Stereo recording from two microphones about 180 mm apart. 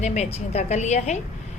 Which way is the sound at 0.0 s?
40° left (ahead or behind).